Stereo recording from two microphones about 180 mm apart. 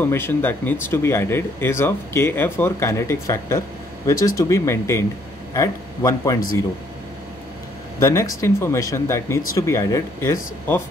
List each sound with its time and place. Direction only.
0.0 s a man's voice: 10° left (ahead or behind)
8.0 s speech: 15° left (ahead or behind)